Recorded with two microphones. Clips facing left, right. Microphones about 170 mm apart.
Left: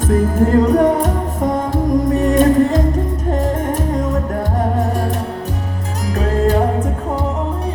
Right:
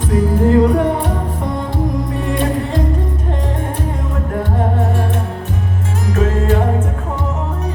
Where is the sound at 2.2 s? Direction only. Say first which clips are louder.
Left 8 dB; 45° left (ahead or behind).